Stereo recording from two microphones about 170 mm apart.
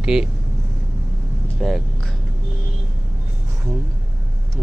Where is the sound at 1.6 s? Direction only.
Centre (ahead or behind).